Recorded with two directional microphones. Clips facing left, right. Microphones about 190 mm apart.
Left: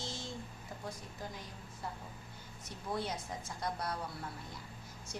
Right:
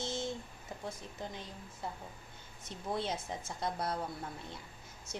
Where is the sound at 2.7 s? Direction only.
25° right (ahead or behind).